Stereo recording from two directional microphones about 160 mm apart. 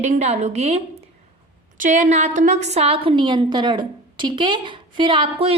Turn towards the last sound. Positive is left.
turn(degrees=-35)  # may be behind; listen again after turning